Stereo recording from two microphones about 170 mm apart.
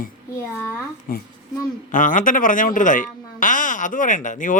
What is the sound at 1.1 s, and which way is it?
Speech, 55° left (ahead or behind).